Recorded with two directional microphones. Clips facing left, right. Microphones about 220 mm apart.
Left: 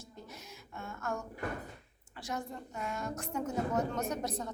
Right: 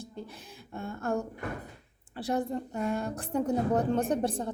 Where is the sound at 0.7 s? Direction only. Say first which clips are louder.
Right 7 dB; 35° right (ahead or behind).